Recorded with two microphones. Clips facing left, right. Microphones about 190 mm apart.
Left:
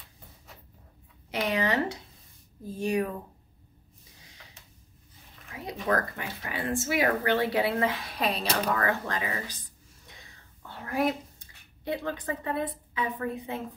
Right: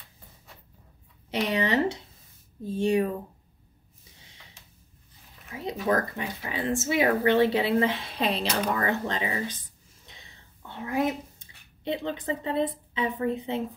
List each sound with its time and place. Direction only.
1.3 s speech: 25° right (ahead or behind)
5.5 s speech: 25° right (ahead or behind)
10.0 s whispering: 20° right (ahead or behind)